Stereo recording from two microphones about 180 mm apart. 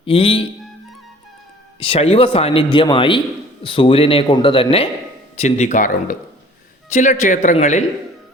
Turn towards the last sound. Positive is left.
turn(degrees=40)  # may be behind; listen again after turning